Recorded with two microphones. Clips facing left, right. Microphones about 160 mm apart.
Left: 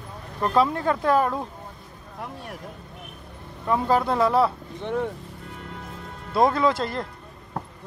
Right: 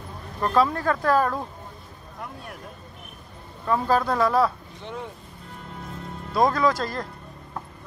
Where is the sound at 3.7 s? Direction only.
20° left (ahead or behind).